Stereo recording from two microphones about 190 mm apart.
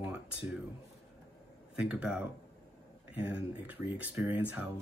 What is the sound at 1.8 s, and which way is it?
Speech, 5° right (ahead or behind).